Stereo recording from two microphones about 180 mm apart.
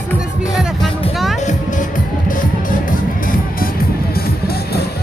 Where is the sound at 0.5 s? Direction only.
Centre (ahead or behind).